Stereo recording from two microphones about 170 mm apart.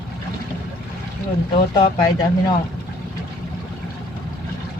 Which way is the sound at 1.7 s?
25° left (ahead or behind).